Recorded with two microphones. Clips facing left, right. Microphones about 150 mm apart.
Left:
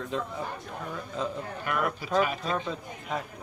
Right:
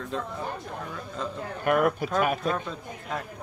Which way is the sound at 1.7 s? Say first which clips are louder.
Right 7 dB; 50° right (ahead or behind).